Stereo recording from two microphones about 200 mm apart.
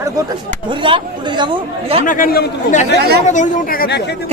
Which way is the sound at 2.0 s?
45° left (ahead or behind).